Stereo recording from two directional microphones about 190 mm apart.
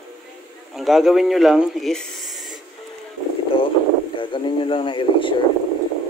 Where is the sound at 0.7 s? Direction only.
Centre (ahead or behind).